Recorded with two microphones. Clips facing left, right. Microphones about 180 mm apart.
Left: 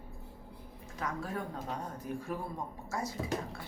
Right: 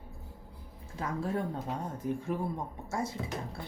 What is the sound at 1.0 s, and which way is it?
Speech, 30° right (ahead or behind).